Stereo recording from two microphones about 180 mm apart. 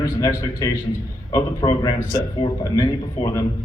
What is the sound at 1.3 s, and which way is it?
Speech, 20° left (ahead or behind).